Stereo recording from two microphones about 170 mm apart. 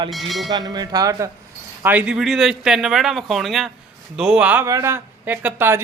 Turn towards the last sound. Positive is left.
turn(degrees=-10)  # may be behind; listen again after turning